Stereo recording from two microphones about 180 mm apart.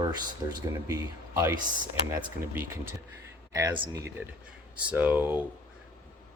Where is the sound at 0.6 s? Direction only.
15° right (ahead or behind).